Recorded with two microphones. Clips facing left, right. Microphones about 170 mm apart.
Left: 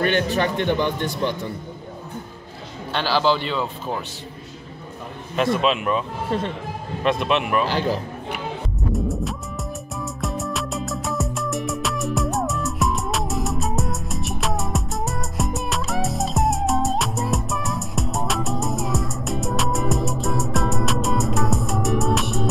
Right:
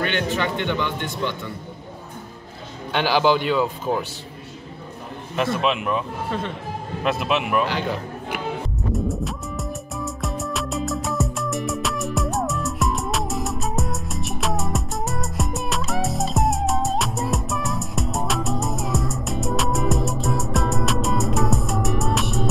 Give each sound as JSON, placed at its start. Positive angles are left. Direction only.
{"t": 0.0, "sound": "speech", "side_deg": 40}
{"t": 2.9, "sound": "speech", "side_deg": -15}
{"t": 5.3, "sound": "a man's voice", "side_deg": 0}
{"t": 7.6, "sound": "speech", "side_deg": 35}
{"t": 8.9, "sound": "music", "side_deg": 0}